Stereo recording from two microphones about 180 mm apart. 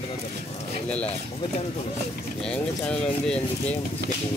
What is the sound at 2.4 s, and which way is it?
Speech, 5° left (ahead or behind).